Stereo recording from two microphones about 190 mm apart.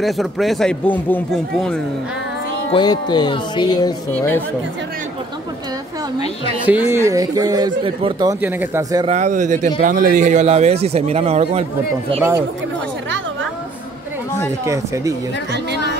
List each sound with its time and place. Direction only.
0.0 s a man's voice: centre (ahead or behind)
2.7 s speech: 25° left (ahead or behind)
6.6 s speech: 10° right (ahead or behind); by 8.3 s 25° right (ahead or behind)
8.3 s speech: 10° right (ahead or behind)
9.0 s speech: 40° right (ahead or behind)
14.6 s speech: 15° right (ahead or behind)